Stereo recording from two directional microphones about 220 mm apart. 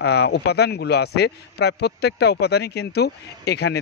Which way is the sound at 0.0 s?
50° left (ahead or behind).